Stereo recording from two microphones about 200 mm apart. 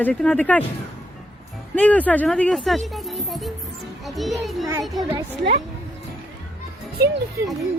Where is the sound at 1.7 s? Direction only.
5° left (ahead or behind).